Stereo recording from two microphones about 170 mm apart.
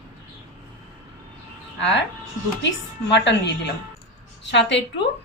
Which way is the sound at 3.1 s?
90° left.